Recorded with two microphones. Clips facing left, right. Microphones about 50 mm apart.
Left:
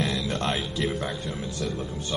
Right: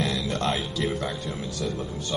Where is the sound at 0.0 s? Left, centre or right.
Centre.